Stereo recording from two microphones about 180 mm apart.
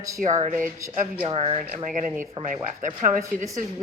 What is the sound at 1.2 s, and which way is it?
Speech, 35° right (ahead or behind).